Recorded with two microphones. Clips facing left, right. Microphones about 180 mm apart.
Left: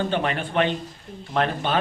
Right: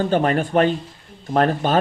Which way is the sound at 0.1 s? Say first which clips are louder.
Right 7 dB; 40° right (ahead or behind).